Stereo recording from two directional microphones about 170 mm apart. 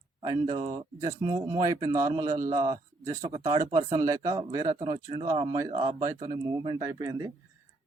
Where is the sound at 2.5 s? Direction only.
25° right (ahead or behind).